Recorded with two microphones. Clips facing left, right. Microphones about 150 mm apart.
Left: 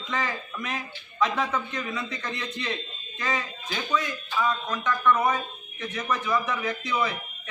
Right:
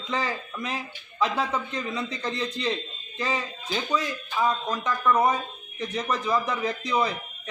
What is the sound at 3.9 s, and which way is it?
A man's voice, 35° right (ahead or behind).